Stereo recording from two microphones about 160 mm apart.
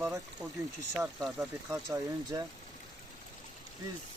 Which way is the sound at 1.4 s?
20° right (ahead or behind).